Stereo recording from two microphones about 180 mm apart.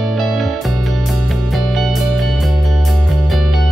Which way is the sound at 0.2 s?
Centre (ahead or behind).